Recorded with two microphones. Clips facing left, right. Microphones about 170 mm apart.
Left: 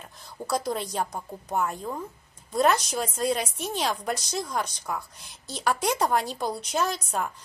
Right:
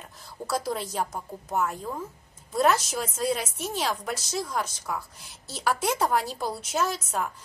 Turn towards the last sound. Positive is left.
turn(degrees=0)  # may be behind; listen again after turning